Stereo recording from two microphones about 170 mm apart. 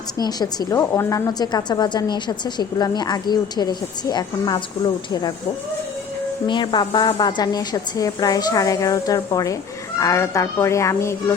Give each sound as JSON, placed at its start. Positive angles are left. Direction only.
{"t": 0.2, "sound": "a woman's voice", "side_deg": 25}
{"t": 6.5, "sound": "a woman's voice", "side_deg": 25}